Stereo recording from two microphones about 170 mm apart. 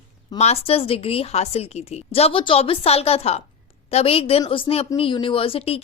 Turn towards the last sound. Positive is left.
turn(degrees=35)  # may be behind; listen again after turning